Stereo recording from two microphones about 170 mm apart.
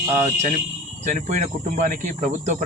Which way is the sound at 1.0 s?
45° right (ahead or behind).